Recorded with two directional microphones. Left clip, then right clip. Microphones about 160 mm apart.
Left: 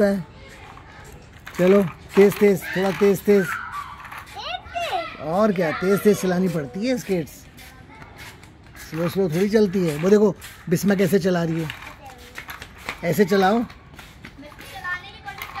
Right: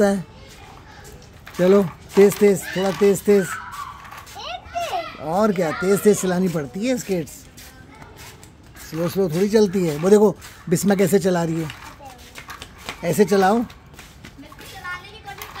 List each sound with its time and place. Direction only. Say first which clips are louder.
1.6 s speech: right 1 dB; 5° right (ahead or behind)
4.4 s children playing: right 1 dB; 20° right (ahead or behind)
5.2 s speech: right 1 dB; 5° right (ahead or behind)
8.9 s speech: right 1 dB; 10° right (ahead or behind)
13.0 s speech: right 2 dB; 10° right (ahead or behind)